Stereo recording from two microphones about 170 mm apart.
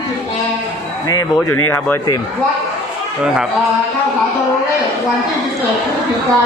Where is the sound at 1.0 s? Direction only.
20° left (ahead or behind).